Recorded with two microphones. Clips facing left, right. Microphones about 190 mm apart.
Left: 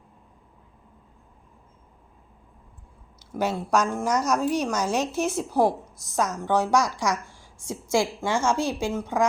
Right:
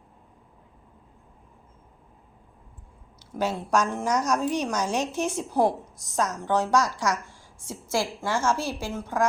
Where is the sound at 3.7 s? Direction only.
5° left (ahead or behind).